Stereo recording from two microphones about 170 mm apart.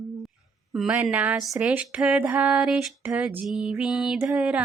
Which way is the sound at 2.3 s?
10° right (ahead or behind).